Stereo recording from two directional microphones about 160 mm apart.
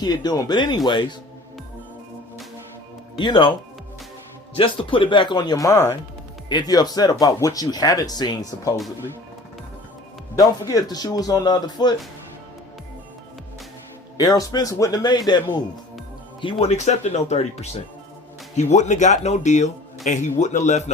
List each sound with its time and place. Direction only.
0.0 s speech: 25° left (ahead or behind)
3.2 s speech: 30° left (ahead or behind)
4.5 s speech: 35° left (ahead or behind)
10.3 s speech: 20° left (ahead or behind)
14.2 s speech: 25° left (ahead or behind); by 20.9 s 45° left (ahead or behind)